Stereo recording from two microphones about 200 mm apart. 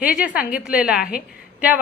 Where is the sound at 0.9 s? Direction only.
45° left (ahead or behind).